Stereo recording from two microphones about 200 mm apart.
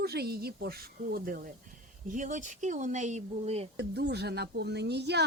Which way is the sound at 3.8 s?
55° right (ahead or behind).